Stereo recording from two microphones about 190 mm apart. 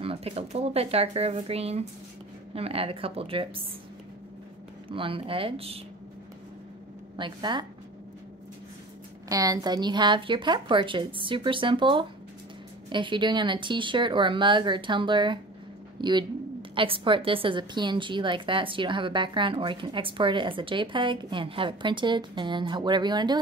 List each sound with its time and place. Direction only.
0.0 s a woman's voice: 30° right (ahead or behind)
4.8 s a woman's voice: 30° right (ahead or behind)
7.2 s a woman's voice: 25° right (ahead or behind)
9.3 s a woman's voice: 20° right (ahead or behind)